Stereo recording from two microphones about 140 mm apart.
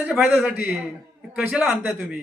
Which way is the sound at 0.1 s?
5° right (ahead or behind).